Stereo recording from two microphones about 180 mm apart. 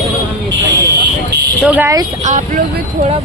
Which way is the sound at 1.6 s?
10° right (ahead or behind).